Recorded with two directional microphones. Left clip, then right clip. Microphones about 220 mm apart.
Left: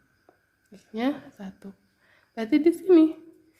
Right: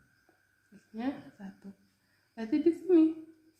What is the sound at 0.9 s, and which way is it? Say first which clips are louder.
A woman's voice: left 9 dB; 50° left (ahead or behind).